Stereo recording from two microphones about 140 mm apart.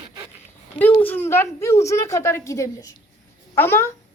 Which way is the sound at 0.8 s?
15° left (ahead or behind).